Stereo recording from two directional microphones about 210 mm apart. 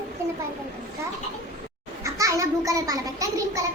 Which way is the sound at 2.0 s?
15° right (ahead or behind).